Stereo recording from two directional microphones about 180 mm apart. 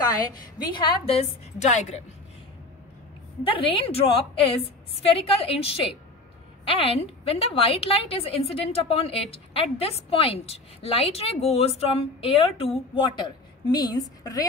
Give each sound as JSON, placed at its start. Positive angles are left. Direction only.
{"t": 0.7, "sound": "a woman's voice", "side_deg": 30}
{"t": 3.4, "sound": "a woman's voice", "side_deg": 30}